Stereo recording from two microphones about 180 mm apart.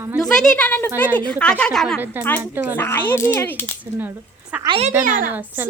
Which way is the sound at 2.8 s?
10° left (ahead or behind).